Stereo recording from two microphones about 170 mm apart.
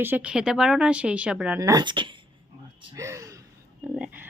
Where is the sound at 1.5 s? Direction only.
20° right (ahead or behind).